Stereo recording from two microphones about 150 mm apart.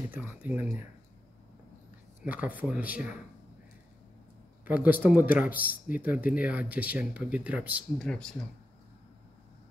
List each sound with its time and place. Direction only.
0.1 s speech: 10° right (ahead or behind)
2.2 s speech: 10° right (ahead or behind)
4.6 s speech: 10° right (ahead or behind)
8.0 s speech: 5° left (ahead or behind)